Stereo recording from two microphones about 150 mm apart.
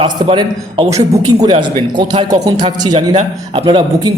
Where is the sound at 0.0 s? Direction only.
35° right (ahead or behind).